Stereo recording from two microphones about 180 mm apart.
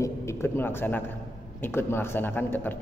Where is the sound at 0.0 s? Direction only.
15° left (ahead or behind).